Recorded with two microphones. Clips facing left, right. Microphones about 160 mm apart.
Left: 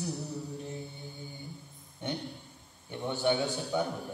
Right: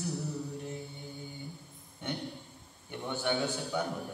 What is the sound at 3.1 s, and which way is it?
Music, 20° left (ahead or behind).